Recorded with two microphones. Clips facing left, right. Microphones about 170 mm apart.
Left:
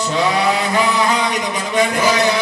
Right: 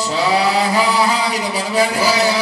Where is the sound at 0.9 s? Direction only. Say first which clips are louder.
Even; 35° right (ahead or behind).